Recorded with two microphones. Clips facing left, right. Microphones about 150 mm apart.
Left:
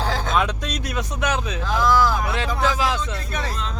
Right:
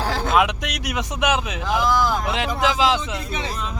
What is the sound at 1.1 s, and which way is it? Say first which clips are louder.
Speech: right 3 dB; 20° right (ahead or behind).